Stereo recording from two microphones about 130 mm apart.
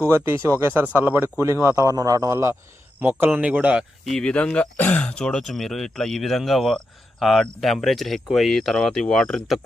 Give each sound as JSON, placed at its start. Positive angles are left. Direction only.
{"t": 0.1, "sound": "a man's voice", "side_deg": -20}
{"t": 4.1, "sound": "speech", "side_deg": 5}